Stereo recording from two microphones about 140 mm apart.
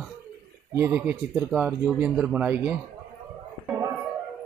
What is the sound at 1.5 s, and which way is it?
Speech, 5° right (ahead or behind).